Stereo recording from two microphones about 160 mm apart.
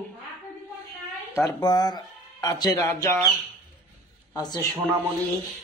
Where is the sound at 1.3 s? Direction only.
20° left (ahead or behind).